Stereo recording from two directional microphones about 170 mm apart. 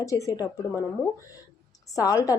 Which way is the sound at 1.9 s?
20° left (ahead or behind).